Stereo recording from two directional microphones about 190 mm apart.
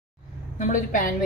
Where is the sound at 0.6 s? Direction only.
45° left (ahead or behind).